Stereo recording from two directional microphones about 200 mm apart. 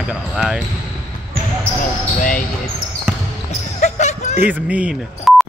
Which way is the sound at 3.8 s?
35° left (ahead or behind).